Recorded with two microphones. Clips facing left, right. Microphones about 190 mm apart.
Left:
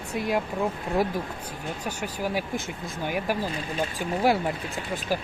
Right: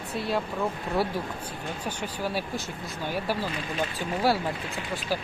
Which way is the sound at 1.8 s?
10° left (ahead or behind).